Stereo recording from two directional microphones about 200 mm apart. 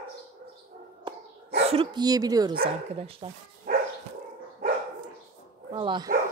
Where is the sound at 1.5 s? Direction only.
30° right (ahead or behind).